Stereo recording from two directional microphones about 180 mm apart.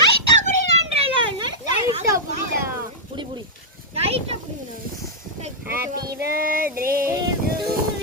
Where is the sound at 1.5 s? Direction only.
25° right (ahead or behind).